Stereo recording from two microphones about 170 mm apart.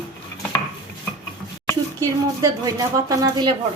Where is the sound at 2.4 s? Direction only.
20° right (ahead or behind).